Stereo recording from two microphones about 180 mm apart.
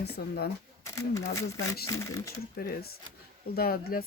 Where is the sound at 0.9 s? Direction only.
20° left (ahead or behind).